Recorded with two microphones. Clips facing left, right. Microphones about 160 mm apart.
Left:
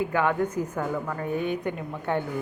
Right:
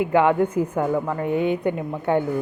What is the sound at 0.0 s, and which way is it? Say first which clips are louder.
A woman's voice: right 6 dB; 20° right (ahead or behind).